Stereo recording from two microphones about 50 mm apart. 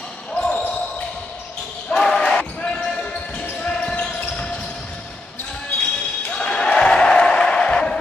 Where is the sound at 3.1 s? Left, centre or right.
Left.